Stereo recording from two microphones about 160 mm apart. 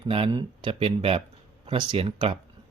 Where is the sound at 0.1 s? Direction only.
35° right (ahead or behind).